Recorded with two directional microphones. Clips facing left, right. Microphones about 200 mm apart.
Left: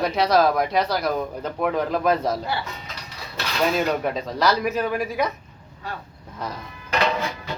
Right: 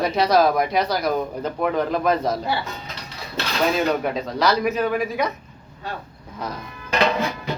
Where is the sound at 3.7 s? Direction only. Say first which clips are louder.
Right 1 dB; centre (ahead or behind).